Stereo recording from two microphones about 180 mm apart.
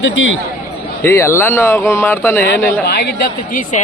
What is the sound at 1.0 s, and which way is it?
Speech, 15° left (ahead or behind).